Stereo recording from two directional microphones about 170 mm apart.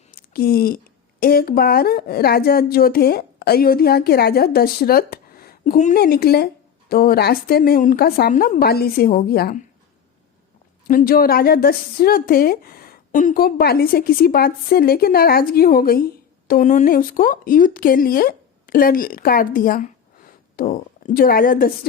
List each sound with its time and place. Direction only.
0.1 s a woman's voice: 60° left (ahead or behind)
6.0 s a woman's voice: 65° left (ahead or behind)
10.8 s a woman's voice: 55° left (ahead or behind)
16.5 s a woman's voice: 50° left (ahead or behind)